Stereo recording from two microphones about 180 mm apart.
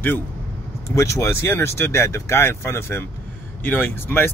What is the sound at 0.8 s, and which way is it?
Speech, 15° left (ahead or behind).